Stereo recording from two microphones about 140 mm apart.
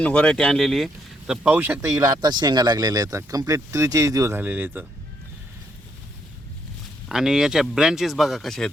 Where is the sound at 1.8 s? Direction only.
25° right (ahead or behind).